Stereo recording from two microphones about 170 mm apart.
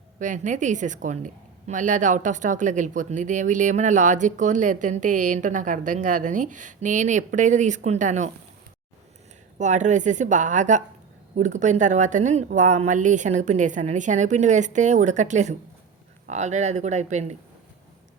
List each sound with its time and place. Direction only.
0.2 s a woman's voice: 45° right (ahead or behind)
9.6 s a woman's voice: 45° right (ahead or behind)